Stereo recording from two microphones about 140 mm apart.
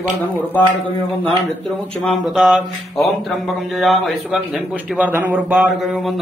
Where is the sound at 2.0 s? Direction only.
Centre (ahead or behind).